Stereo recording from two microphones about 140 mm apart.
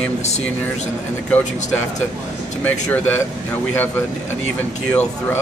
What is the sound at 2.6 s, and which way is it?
Speech, 15° left (ahead or behind).